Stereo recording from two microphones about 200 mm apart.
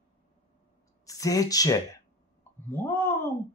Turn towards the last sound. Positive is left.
turn(degrees=10)  # may be behind; listen again after turning